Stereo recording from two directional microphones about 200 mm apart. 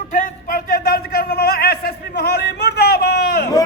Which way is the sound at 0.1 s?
45° left (ahead or behind).